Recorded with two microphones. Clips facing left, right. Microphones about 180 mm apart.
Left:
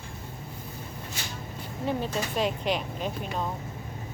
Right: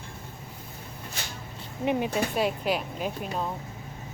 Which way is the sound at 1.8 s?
15° right (ahead or behind).